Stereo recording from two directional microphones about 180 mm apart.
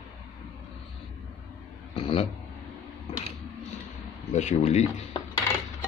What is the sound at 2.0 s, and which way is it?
Speech, 30° left (ahead or behind).